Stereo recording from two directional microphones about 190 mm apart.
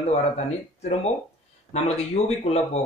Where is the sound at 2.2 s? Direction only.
35° left (ahead or behind).